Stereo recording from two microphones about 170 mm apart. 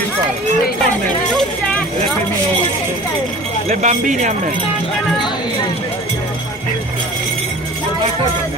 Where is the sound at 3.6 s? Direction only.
45° right (ahead or behind).